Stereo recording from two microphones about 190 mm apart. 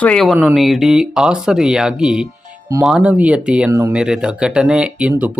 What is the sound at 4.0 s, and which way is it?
Speech, 5° right (ahead or behind).